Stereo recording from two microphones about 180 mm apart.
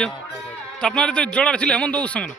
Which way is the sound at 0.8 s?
5° left (ahead or behind).